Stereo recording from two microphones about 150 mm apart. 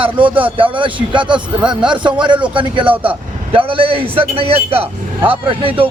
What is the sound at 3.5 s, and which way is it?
A man's voice, 35° right (ahead or behind).